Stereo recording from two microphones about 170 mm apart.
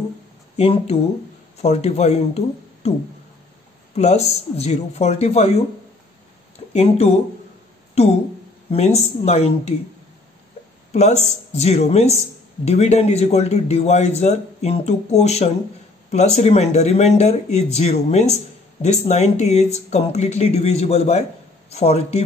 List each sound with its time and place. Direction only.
0.6 s a man's voice: 35° left (ahead or behind)
3.9 s a man's voice: 40° left (ahead or behind)
6.7 s a man's voice: 35° left (ahead or behind)
10.9 s a man's voice: 40° left (ahead or behind)